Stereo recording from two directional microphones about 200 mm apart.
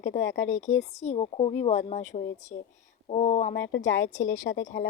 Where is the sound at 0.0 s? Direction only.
35° left (ahead or behind).